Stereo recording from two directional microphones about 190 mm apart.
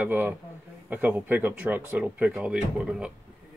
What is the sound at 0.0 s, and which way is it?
Speech, 10° right (ahead or behind).